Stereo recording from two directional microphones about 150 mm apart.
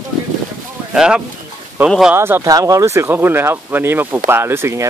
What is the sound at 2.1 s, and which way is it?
Speech, 15° right (ahead or behind).